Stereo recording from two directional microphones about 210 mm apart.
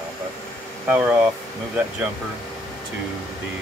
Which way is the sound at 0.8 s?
10° right (ahead or behind).